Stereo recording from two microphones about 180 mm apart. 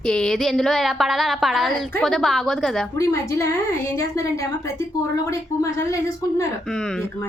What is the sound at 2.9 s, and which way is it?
A woman's voice, 15° left (ahead or behind).